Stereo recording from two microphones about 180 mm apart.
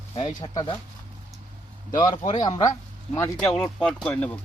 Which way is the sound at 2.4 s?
20° left (ahead or behind).